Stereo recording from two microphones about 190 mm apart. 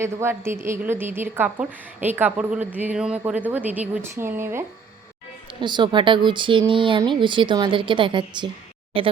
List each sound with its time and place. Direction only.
0.0 s a woman's voice: 15° right (ahead or behind)
5.5 s speech: 25° right (ahead or behind)